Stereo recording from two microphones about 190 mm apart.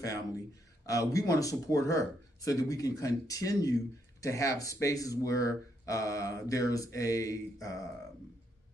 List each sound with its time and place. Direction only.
0.8 s speech: 15° left (ahead or behind)